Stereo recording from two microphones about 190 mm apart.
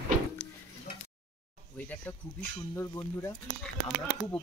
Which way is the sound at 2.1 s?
10° left (ahead or behind).